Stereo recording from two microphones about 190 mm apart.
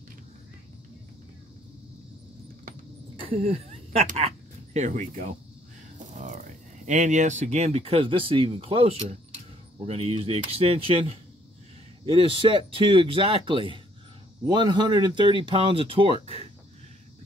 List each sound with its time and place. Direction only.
3.2 s speech: 30° right (ahead or behind)